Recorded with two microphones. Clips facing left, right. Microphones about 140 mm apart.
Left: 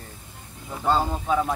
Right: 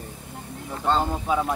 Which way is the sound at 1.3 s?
10° right (ahead or behind).